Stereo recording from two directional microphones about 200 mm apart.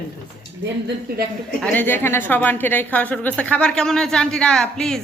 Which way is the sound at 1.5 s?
5° left (ahead or behind).